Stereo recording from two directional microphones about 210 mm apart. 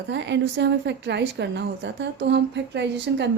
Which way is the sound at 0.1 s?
55° right (ahead or behind).